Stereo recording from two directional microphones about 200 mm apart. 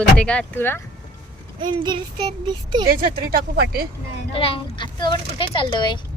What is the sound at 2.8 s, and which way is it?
Speech, 50° right (ahead or behind).